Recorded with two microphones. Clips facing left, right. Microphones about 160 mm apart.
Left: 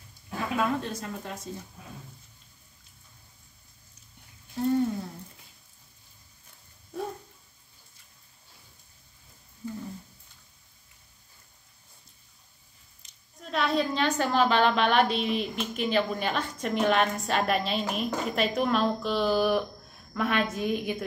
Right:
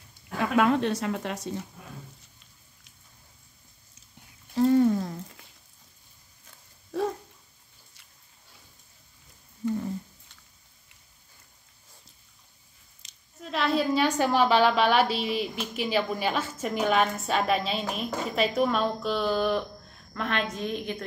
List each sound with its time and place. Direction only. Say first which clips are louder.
0.6 s a woman's voice: right 7 dB; 80° right
4.6 s speech: right 5 dB; 90° right
13.0 s squish: right 2 dB; 85° right
13.4 s a woman's voice: right 1 dB; centre (ahead or behind)